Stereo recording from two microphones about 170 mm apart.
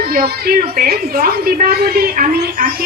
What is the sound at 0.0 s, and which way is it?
A woman's voice, 65° right (ahead or behind).